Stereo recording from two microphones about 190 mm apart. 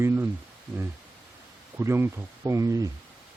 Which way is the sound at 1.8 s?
15° right (ahead or behind).